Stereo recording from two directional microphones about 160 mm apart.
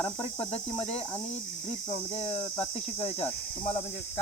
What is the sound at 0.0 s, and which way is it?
Speech, 35° left (ahead or behind).